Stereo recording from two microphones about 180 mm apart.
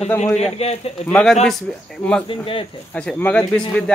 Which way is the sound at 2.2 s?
30° left (ahead or behind).